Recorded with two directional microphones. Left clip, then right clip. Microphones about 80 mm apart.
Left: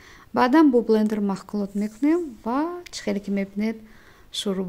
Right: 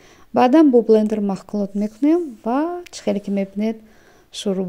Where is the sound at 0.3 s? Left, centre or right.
Right.